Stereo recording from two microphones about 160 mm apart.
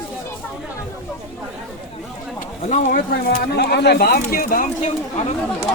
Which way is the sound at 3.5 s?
90° left.